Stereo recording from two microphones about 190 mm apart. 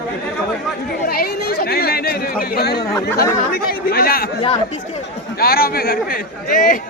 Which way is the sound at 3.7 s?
50° left (ahead or behind).